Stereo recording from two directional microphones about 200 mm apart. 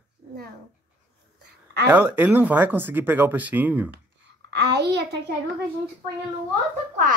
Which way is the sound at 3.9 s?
55° right (ahead or behind).